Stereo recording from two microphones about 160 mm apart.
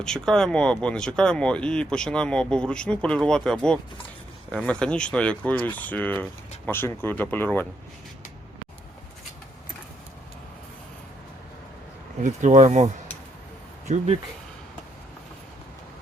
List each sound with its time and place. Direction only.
0.0 s speech: 5° left (ahead or behind)
12.2 s speech: 50° right (ahead or behind)